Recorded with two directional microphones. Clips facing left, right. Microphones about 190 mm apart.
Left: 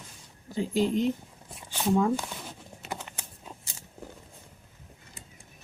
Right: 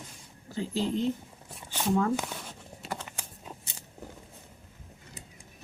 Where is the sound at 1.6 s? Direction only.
15° left (ahead or behind).